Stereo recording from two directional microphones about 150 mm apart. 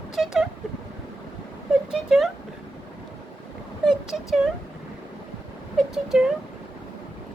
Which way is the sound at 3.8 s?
5° right (ahead or behind).